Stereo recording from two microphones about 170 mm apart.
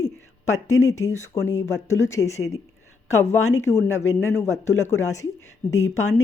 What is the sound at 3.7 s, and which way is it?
Speech, 15° left (ahead or behind).